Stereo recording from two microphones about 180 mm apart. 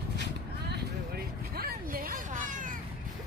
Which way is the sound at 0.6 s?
65° right (ahead or behind).